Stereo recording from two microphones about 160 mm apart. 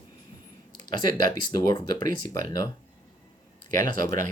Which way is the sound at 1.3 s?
25° left (ahead or behind).